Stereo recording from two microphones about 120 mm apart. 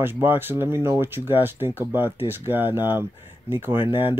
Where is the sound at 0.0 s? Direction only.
15° right (ahead or behind).